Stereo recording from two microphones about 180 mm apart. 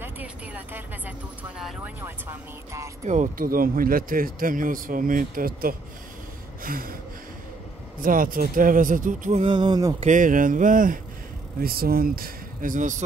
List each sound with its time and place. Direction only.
0.0 s music: 10° right (ahead or behind)
1.8 s speech: 10° right (ahead or behind)
3.1 s speech: 45° right (ahead or behind)
8.0 s speech: 50° right (ahead or behind)
9.4 s a sound: 25° right (ahead or behind)
9.9 s speech: 45° right (ahead or behind)